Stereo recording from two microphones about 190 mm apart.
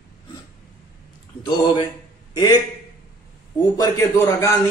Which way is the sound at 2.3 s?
20° left (ahead or behind).